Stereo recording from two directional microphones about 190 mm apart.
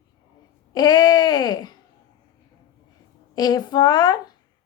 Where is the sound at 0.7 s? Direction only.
20° left (ahead or behind).